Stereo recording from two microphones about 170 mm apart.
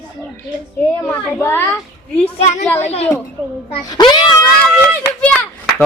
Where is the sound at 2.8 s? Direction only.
40° left (ahead or behind).